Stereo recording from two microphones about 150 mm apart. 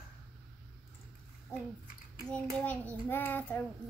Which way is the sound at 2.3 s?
10° left (ahead or behind).